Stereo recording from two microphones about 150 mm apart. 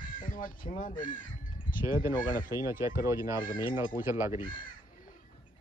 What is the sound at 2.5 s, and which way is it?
Speech, 20° right (ahead or behind).